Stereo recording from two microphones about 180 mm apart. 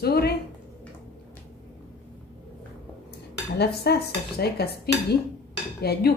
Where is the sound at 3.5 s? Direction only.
65° left (ahead or behind).